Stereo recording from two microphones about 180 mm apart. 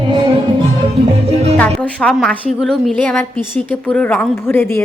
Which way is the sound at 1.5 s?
10° left (ahead or behind).